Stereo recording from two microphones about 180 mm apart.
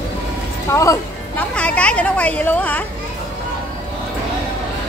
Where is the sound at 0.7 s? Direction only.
15° left (ahead or behind).